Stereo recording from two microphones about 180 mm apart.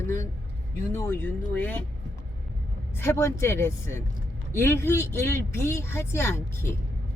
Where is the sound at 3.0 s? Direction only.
15° left (ahead or behind).